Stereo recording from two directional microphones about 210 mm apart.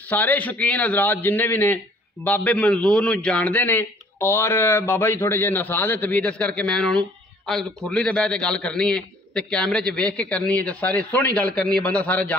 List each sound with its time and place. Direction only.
0.1 s a man's voice: 10° left (ahead or behind)